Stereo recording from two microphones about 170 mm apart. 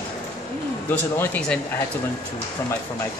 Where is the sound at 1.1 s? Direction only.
5° left (ahead or behind).